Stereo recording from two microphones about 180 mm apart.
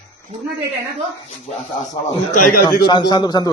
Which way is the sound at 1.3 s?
40° left (ahead or behind).